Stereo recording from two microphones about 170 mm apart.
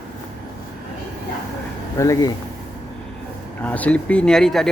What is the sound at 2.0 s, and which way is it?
Speech, 20° left (ahead or behind).